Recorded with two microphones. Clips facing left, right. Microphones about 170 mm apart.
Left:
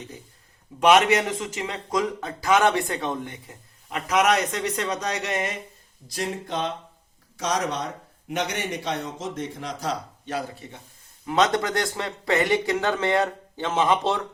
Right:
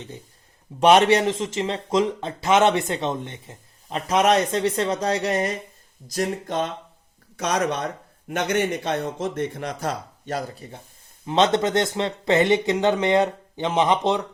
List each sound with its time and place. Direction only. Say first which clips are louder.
0.8 s speech: right 2 dB; 30° right (ahead or behind)
6.1 s a man's voice: right 4 dB; 45° right (ahead or behind)
7.3 s a man's voice: right 3 dB; 60° right (ahead or behind); by 10.8 s 45° right (ahead or behind)
11.3 s speech: right 3 dB; 25° right (ahead or behind)